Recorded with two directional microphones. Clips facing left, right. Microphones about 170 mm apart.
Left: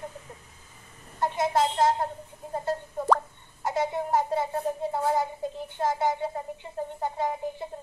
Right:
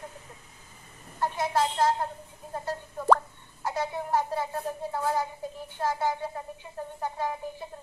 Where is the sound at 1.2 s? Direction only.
25° left (ahead or behind).